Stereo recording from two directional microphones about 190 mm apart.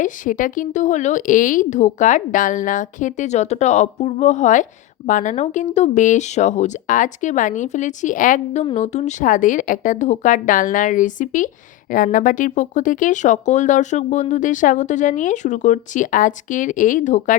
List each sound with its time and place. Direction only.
0.0 s speech: 45° left (ahead or behind)